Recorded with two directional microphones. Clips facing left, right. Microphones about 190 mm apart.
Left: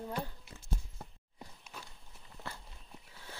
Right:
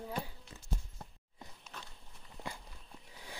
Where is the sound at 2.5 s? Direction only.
15° right (ahead or behind).